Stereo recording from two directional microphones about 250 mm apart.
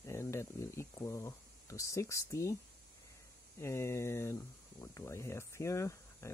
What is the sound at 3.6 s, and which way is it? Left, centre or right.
Speech, centre.